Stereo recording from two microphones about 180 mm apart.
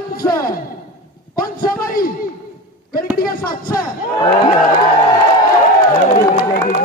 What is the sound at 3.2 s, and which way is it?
Speech, 55° left (ahead or behind).